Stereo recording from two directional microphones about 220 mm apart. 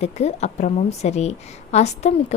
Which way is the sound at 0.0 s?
30° left (ahead or behind).